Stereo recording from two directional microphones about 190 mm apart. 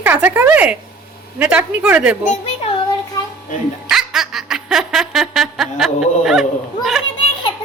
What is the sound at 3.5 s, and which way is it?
Speech, 40° left (ahead or behind).